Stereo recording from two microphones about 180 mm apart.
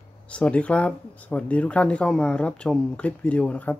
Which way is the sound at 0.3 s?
5° left (ahead or behind).